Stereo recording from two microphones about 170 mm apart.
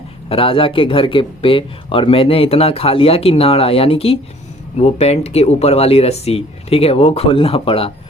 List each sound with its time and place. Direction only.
0.3 s speech: 30° left (ahead or behind)